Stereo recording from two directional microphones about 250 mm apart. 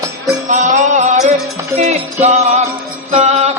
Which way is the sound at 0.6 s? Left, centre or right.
Right.